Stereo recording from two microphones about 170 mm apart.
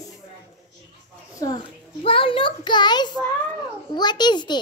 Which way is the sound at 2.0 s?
30° left (ahead or behind).